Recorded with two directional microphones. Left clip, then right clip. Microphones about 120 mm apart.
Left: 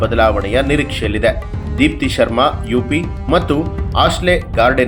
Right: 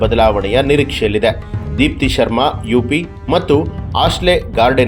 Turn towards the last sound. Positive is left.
turn(degrees=-50)  # may be behind; listen again after turning